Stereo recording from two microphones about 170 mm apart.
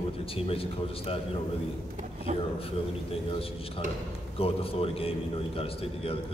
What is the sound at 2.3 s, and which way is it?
Speech, 40° right (ahead or behind).